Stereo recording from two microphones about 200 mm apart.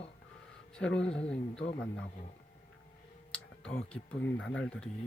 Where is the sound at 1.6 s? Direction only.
30° left (ahead or behind).